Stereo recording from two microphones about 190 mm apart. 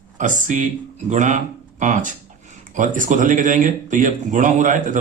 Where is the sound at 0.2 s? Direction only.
40° right (ahead or behind).